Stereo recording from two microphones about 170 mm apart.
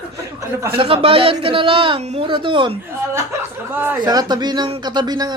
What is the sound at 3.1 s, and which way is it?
Speech, 15° right (ahead or behind).